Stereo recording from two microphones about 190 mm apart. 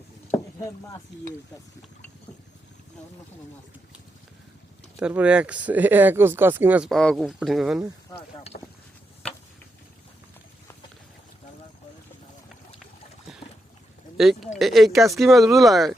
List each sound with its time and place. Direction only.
0.3 s a sound: 15° left (ahead or behind)
4.9 s speech: 5° right (ahead or behind)
8.5 s speech: 50° left (ahead or behind)
14.2 s speech: centre (ahead or behind)